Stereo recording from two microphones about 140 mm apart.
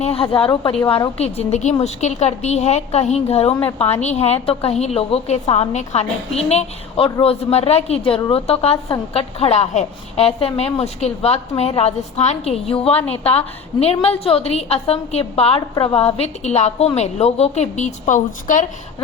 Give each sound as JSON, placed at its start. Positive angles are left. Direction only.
{"t": 0.0, "sound": "a woman's voice", "side_deg": 45}
{"t": 1.2, "sound": "a woman's voice", "side_deg": 50}